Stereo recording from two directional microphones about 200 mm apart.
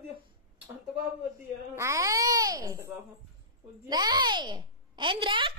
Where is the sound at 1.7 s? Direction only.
15° right (ahead or behind).